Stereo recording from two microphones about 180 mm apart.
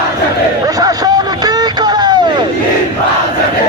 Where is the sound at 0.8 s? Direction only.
20° right (ahead or behind).